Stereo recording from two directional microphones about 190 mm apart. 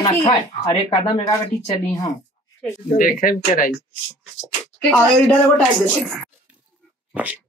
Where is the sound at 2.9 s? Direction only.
45° left (ahead or behind).